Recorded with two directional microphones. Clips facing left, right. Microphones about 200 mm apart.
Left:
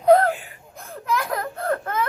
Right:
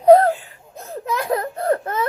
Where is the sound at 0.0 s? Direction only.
30° right (ahead or behind).